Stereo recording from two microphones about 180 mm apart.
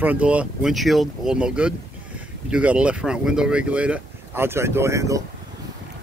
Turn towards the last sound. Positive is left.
turn(degrees=-15)  # may be behind; listen again after turning